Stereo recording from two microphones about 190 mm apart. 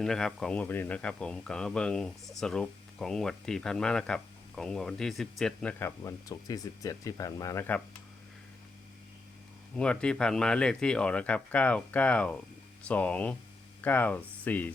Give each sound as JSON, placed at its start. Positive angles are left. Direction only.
{"t": 0.0, "sound": "speech", "side_deg": 0}
{"t": 6.1, "sound": "speech", "side_deg": 20}
{"t": 9.7, "sound": "speech", "side_deg": 5}